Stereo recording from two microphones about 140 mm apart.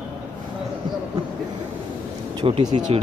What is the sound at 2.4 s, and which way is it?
Speech, 30° right (ahead or behind).